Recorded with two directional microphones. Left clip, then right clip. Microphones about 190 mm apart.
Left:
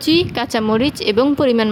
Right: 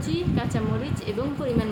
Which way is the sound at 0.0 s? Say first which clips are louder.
Left 12 dB; 55° left (ahead or behind).